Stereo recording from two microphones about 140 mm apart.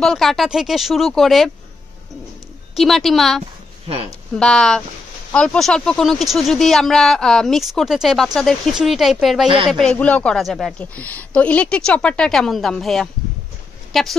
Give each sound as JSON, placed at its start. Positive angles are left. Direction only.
{"t": 0.0, "sound": "speech", "side_deg": 0}
{"t": 2.7, "sound": "speech", "side_deg": 0}
{"t": 3.8, "sound": "a woman's voice", "side_deg": -45}
{"t": 4.4, "sound": "speech", "side_deg": 5}